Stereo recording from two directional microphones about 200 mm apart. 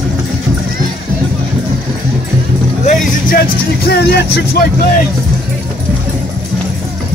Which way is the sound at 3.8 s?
55° left (ahead or behind).